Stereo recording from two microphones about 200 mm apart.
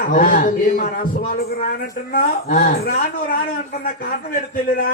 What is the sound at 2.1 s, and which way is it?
Speech, 45° left (ahead or behind).